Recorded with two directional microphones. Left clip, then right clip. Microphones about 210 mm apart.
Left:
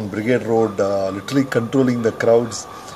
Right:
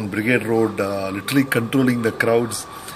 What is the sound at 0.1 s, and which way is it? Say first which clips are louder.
Speech: left 1 dB; 10° right (ahead or behind).